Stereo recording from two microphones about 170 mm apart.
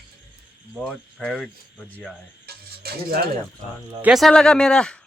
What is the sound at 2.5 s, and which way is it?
Music, 65° right (ahead or behind).